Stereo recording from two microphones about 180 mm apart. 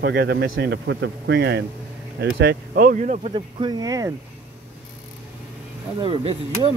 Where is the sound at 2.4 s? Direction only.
60° right (ahead or behind); by 3.3 s 40° right (ahead or behind).